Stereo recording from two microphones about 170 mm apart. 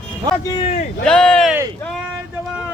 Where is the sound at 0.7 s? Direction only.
45° left (ahead or behind).